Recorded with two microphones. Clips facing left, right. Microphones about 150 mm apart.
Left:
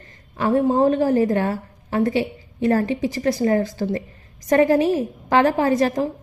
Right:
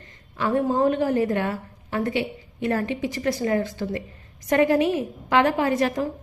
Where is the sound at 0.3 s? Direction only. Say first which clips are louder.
Left 4 dB; 40° left (ahead or behind).